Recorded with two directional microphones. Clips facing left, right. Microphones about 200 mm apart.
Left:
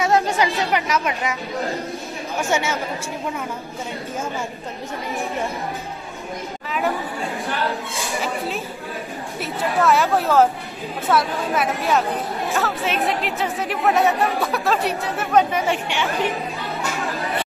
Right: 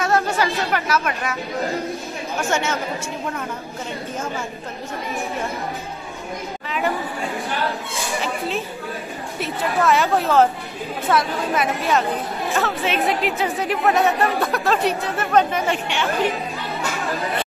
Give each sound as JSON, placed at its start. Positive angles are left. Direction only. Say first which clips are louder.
{"t": 0.0, "sound": "speech", "louder": "left 1 dB", "side_deg": 15}
{"t": 7.9, "sound": "speech", "louder": "even", "side_deg": 0}
{"t": 16.8, "sound": "a sound", "louder": "left 1 dB", "side_deg": 0}